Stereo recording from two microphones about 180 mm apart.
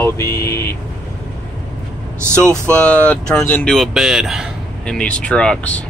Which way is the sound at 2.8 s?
5° left (ahead or behind).